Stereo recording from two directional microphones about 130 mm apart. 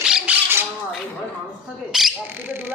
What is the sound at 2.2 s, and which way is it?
Speech, 15° right (ahead or behind).